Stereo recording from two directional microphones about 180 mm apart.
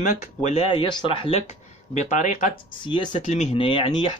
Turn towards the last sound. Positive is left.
turn(degrees=30)  # may be behind; listen again after turning